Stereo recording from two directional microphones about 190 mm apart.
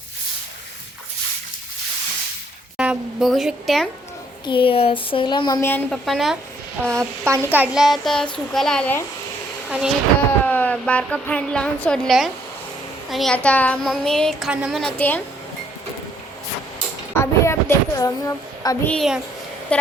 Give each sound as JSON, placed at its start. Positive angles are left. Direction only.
{"t": 2.7, "sound": "speech", "side_deg": -5}
{"t": 4.4, "sound": "speech", "side_deg": 25}
{"t": 5.6, "sound": "speech", "side_deg": 5}
{"t": 7.3, "sound": "speech", "side_deg": -15}
{"t": 9.6, "sound": "speech", "side_deg": -5}
{"t": 10.2, "sound": "speech", "side_deg": 10}
{"t": 17.2, "sound": "a sound", "side_deg": 15}
{"t": 18.9, "sound": "speech", "side_deg": 0}